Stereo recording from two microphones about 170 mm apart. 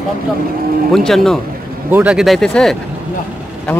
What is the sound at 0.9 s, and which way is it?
Speech, centre (ahead or behind).